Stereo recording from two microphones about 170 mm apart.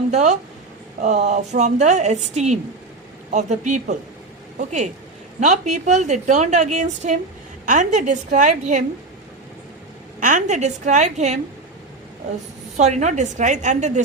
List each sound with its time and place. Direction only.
0.1 s a woman's voice: 45° right (ahead or behind)
10.2 s a woman's voice: 50° right (ahead or behind)
12.7 s a woman's voice: 45° right (ahead or behind)